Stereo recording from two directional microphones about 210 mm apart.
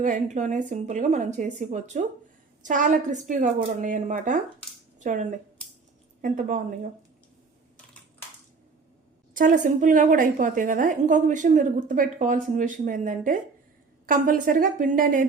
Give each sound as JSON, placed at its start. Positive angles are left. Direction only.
{"t": 0.0, "sound": "a woman's voice", "side_deg": -35}
{"t": 9.3, "sound": "a woman's voice", "side_deg": -40}